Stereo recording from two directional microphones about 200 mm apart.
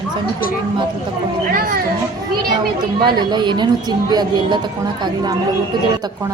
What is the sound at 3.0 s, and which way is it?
Speech, 20° right (ahead or behind).